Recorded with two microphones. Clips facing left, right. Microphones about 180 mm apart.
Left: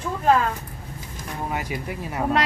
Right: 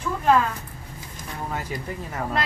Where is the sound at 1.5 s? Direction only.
15° left (ahead or behind).